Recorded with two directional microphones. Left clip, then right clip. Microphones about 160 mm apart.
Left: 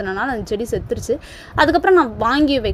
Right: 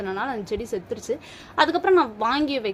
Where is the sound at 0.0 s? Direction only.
35° left (ahead or behind).